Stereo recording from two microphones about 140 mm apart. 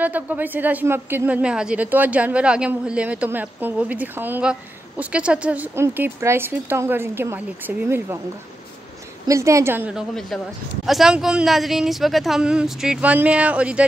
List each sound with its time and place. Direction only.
0.0 s a woman's voice: 10° right (ahead or behind)
9.3 s a woman's voice: 20° right (ahead or behind)
10.3 s speech: centre (ahead or behind)